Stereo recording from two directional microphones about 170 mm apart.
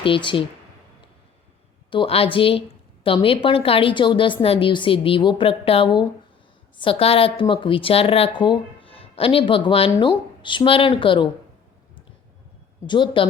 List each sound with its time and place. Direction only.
0.0 s speech: 30° left (ahead or behind)
1.9 s a woman's voice: 30° left (ahead or behind)
12.8 s speech: 25° left (ahead or behind)